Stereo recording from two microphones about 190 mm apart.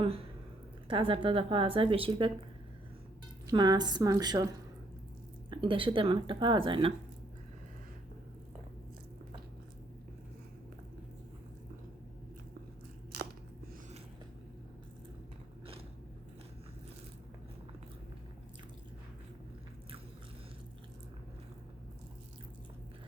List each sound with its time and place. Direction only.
0.9 s speech: 25° right (ahead or behind)
3.4 s speech: 20° right (ahead or behind)
5.5 s speech: 25° right (ahead or behind)